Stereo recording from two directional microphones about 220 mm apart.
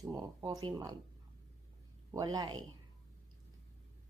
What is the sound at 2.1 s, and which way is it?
Speech, 15° right (ahead or behind).